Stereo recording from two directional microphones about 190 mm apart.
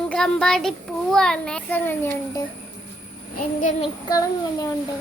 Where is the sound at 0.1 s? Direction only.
5° left (ahead or behind).